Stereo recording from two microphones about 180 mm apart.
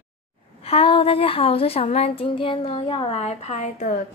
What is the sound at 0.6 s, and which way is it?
Child singing, 30° left (ahead or behind).